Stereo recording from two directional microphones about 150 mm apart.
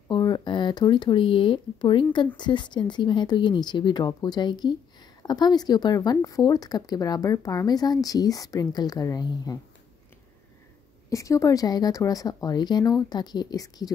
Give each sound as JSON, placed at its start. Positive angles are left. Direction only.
{"t": 0.1, "sound": "speech", "side_deg": 30}
{"t": 11.1, "sound": "speech", "side_deg": 20}